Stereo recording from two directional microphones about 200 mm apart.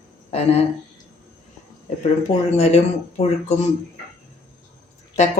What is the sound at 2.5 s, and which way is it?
Speech, 30° left (ahead or behind).